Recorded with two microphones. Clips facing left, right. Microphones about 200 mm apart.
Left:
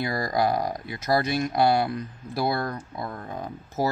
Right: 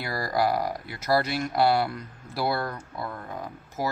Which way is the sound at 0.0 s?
15° left (ahead or behind).